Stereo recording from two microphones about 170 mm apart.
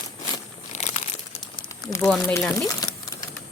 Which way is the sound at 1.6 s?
25° left (ahead or behind).